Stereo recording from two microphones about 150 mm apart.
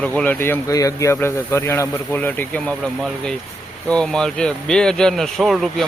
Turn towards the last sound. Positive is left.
turn(degrees=0)  # may be behind; listen again after turning